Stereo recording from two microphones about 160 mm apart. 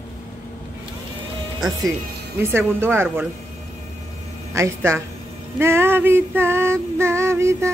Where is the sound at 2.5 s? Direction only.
15° right (ahead or behind).